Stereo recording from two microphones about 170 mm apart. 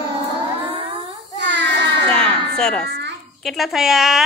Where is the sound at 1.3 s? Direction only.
90° right.